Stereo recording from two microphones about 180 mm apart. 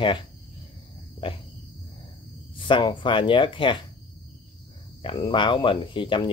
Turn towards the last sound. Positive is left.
turn(degrees=25)  # may be behind; listen again after turning